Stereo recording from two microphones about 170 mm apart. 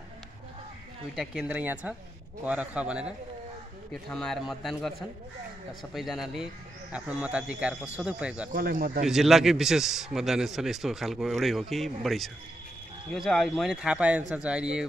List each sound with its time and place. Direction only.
1.1 s a man's voice: centre (ahead or behind)
5.9 s speech: centre (ahead or behind)
8.5 s speech: 55° right (ahead or behind)
9.0 s a man's voice: centre (ahead or behind)